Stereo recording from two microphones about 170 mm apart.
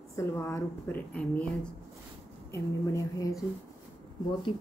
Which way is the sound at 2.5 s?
20° left (ahead or behind).